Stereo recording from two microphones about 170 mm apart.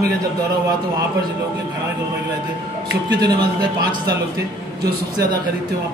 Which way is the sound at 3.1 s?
25° right (ahead or behind).